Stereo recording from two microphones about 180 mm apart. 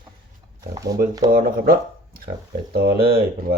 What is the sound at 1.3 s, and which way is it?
Speech, 55° right (ahead or behind).